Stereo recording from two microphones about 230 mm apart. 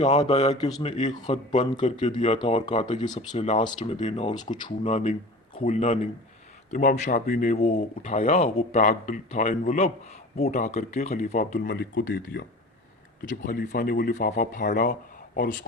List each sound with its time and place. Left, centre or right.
0.0 s speech: left
1.5 s speech: left